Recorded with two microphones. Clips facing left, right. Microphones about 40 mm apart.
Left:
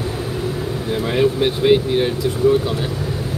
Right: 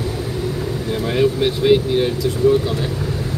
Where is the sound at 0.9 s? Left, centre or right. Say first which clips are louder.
Even; centre.